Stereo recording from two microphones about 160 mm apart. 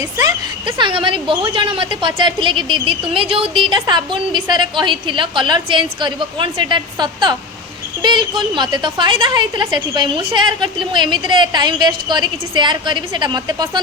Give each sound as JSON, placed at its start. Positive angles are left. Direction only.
{"t": 0.2, "sound": "a woman's voice", "side_deg": -25}